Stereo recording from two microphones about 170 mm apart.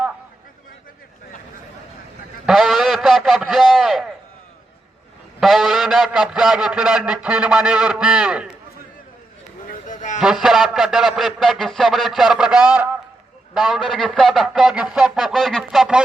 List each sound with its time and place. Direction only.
2.5 s a man's voice: centre (ahead or behind)
5.4 s a man's voice: centre (ahead or behind)
9.8 s a sound: 50° left (ahead or behind)
10.2 s a man's voice: centre (ahead or behind)